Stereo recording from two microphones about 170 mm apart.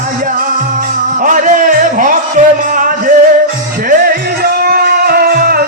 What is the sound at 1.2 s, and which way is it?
Music, 50° right (ahead or behind).